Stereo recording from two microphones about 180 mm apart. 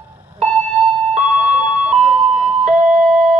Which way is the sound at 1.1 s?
40° right (ahead or behind).